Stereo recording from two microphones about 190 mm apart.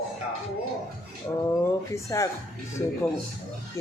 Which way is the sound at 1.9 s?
15° left (ahead or behind).